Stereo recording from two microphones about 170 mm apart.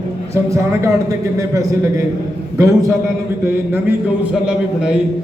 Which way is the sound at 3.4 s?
15° right (ahead or behind).